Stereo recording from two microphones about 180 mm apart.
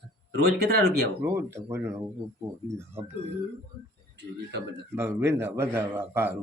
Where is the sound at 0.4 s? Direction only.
65° right (ahead or behind).